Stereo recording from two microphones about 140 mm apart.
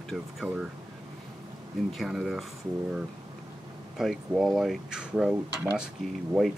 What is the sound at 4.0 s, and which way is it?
Speech, centre (ahead or behind).